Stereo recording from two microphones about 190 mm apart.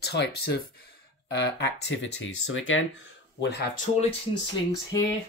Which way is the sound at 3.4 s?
60° left (ahead or behind).